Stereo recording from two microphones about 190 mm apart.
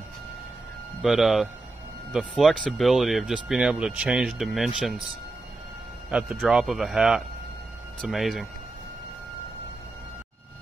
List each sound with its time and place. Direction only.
1.0 s speech: centre (ahead or behind)
6.0 s speech: 5° right (ahead or behind)